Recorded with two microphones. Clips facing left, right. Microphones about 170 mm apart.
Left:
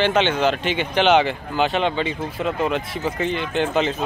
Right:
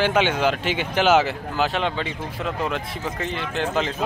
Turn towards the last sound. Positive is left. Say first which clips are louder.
# left 3 dB
turn(degrees=0)  # may be behind; listen again after turning